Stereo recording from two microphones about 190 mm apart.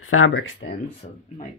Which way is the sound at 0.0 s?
90° left.